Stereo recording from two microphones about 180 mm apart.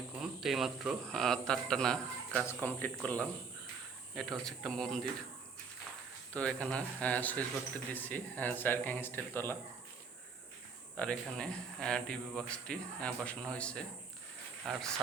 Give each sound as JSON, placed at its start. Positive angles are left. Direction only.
{"t": 0.2, "sound": "speech", "side_deg": 0}
{"t": 6.3, "sound": "speech", "side_deg": 5}
{"t": 10.9, "sound": "speech", "side_deg": 5}